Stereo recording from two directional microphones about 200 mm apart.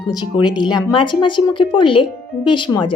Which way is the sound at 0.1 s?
20° left (ahead or behind).